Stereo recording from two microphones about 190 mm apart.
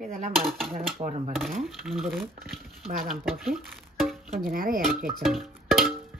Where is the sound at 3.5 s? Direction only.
Centre (ahead or behind).